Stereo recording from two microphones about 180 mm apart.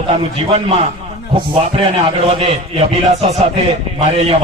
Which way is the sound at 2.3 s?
35° right (ahead or behind).